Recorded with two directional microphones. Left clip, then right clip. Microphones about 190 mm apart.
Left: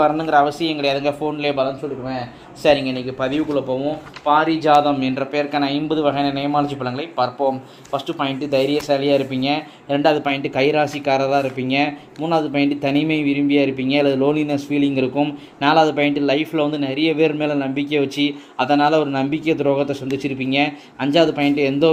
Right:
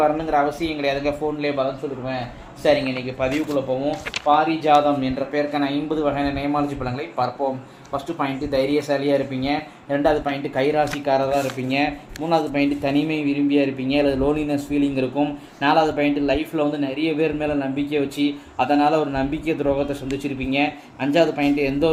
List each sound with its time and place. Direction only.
0.0 s speech: 25° left (ahead or behind)
4.3 s speech: 30° left (ahead or behind)